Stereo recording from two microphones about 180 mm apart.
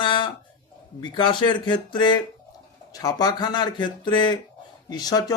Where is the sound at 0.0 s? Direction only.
25° left (ahead or behind).